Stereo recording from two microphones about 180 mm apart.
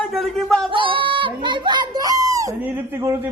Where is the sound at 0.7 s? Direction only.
30° right (ahead or behind).